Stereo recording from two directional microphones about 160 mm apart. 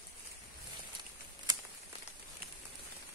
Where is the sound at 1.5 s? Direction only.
25° right (ahead or behind).